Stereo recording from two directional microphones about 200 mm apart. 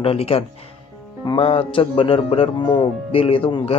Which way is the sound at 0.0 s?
30° left (ahead or behind).